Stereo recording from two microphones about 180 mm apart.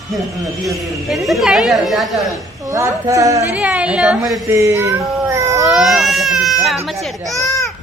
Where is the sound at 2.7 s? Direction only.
15° right (ahead or behind).